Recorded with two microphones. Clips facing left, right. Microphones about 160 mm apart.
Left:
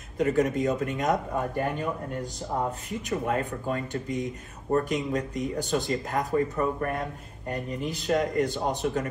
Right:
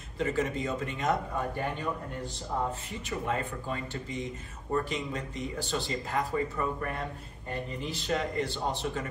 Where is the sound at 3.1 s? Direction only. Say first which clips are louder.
Left 4 dB; 45° left (ahead or behind).